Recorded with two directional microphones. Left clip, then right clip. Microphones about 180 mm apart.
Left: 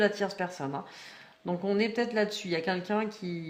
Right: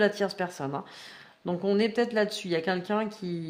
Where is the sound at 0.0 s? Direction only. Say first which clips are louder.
Right 2 dB; 40° right (ahead or behind).